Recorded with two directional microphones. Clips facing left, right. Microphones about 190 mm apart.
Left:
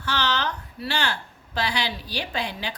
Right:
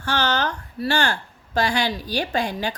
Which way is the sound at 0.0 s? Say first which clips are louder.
Right 3 dB; 45° right (ahead or behind).